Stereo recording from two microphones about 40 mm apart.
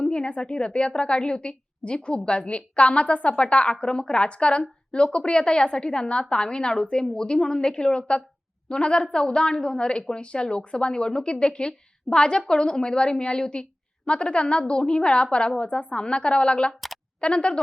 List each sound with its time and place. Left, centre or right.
0.0 s a woman's voice: left